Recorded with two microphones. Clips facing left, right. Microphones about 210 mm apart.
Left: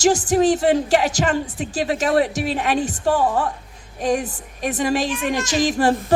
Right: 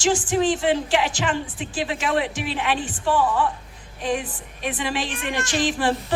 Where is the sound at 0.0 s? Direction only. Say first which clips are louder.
Left 4 dB; 40° left (ahead or behind).